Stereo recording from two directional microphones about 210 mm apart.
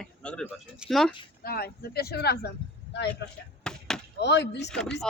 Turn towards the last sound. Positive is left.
turn(degrees=5)  # may be behind; listen again after turning